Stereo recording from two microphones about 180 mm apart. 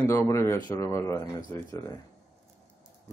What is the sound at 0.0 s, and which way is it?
Speech, 15° left (ahead or behind).